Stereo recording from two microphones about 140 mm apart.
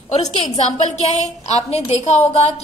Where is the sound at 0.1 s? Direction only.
50° left (ahead or behind).